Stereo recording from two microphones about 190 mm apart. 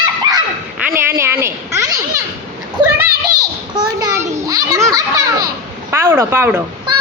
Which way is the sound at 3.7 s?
20° right (ahead or behind).